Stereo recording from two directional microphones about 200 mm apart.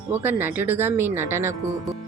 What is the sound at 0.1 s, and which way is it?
A woman's voice, 10° right (ahead or behind).